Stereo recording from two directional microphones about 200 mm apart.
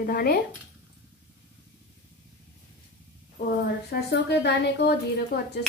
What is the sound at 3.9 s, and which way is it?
A woman's voice, 55° left (ahead or behind).